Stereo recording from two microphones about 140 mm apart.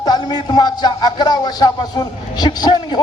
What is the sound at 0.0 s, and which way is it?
A man's voice, 30° left (ahead or behind).